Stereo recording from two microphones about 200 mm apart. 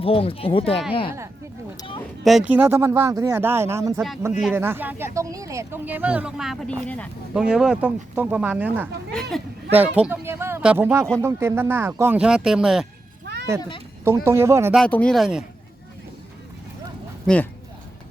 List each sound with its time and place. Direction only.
0.0 s speech: 30° left (ahead or behind)
2.2 s speech: 5° right (ahead or behind)
7.4 s speech: 5° right (ahead or behind)
13.2 s a sound: 60° right (ahead or behind)
13.6 s speech: 25° left (ahead or behind)
14.3 s speech: 15° right (ahead or behind)
14.7 s speech: 5° left (ahead or behind)
17.2 s speech: 5° left (ahead or behind)